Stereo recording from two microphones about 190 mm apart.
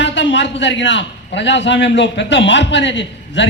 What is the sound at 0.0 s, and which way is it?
A man's voice, 70° left (ahead or behind).